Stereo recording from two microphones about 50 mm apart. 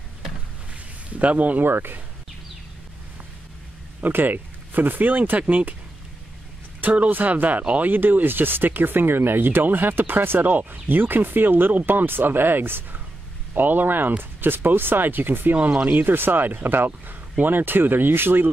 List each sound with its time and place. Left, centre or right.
1.1 s speech: right
1.7 s speech: right
4.0 s speech: right
6.8 s speech: right